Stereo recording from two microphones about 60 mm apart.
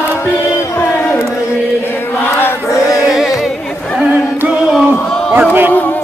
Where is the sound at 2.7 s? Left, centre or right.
Left.